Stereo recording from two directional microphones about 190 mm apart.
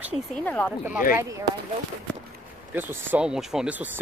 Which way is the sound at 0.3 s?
5° left (ahead or behind).